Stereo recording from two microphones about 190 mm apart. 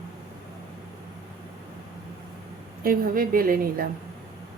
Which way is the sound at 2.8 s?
50° right (ahead or behind).